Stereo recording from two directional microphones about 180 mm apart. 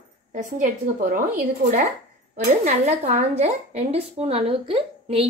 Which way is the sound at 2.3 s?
40° right (ahead or behind).